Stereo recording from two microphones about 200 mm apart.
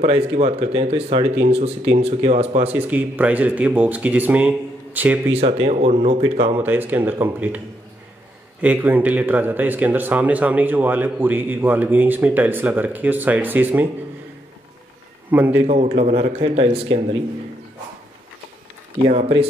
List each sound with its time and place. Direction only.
0.0 s speech: 30° right (ahead or behind)
2.7 s speech: 10° right (ahead or behind)
5.3 s speech: 30° right (ahead or behind)
6.5 s speech: 10° right (ahead or behind)
15.3 s speech: 10° right (ahead or behind)
15.6 s speech: 35° right (ahead or behind)
19.0 s speech: 30° right (ahead or behind)